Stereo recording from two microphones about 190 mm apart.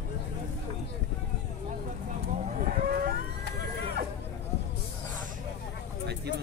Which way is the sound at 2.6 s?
50° right (ahead or behind).